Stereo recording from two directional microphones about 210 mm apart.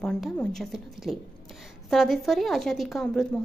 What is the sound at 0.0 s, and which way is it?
A woman's voice, 5° left (ahead or behind).